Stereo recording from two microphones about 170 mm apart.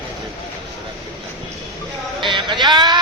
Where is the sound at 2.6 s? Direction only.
25° right (ahead or behind).